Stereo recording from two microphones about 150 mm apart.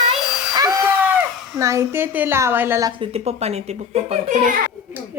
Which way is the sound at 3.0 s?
40° right (ahead or behind).